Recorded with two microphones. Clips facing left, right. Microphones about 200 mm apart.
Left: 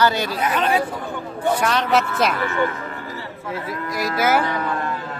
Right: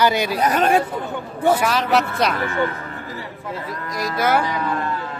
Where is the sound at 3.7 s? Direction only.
5° left (ahead or behind).